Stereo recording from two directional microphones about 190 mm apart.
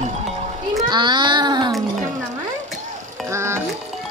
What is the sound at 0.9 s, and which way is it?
Speech, 25° right (ahead or behind).